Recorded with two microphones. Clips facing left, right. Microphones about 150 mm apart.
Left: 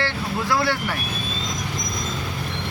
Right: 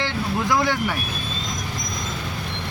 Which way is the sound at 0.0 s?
15° right (ahead or behind).